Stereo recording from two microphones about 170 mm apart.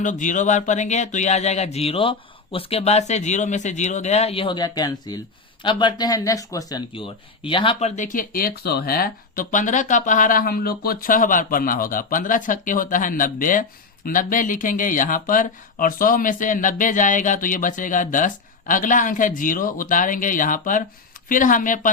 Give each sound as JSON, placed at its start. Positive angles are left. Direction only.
{"t": 0.0, "sound": "speech", "side_deg": 50}